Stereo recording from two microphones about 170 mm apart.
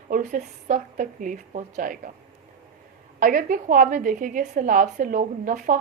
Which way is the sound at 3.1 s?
55° right (ahead or behind).